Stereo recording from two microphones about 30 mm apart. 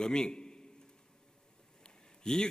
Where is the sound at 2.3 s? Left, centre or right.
Left.